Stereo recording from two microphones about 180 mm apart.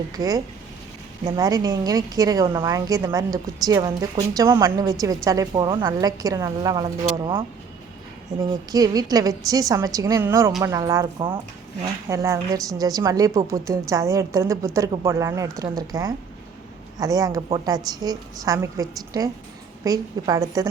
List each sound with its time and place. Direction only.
0.1 s a woman's voice: 20° right (ahead or behind)
8.7 s a woman's voice: 20° right (ahead or behind)